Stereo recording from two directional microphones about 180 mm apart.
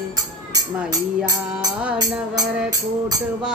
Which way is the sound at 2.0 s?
20° right (ahead or behind).